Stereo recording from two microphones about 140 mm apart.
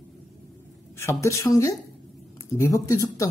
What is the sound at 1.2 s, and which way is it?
Speech, 20° left (ahead or behind).